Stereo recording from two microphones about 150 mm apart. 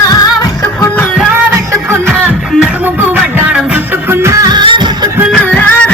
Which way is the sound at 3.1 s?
10° right (ahead or behind).